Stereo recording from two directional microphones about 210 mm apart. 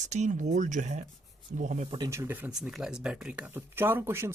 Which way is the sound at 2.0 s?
15° right (ahead or behind).